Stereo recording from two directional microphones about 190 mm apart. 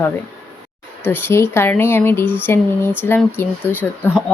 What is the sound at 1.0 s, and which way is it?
Speech, 10° left (ahead or behind).